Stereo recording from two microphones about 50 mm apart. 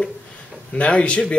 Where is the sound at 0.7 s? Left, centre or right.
Left.